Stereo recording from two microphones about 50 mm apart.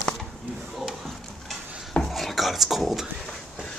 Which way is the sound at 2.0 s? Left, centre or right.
Centre.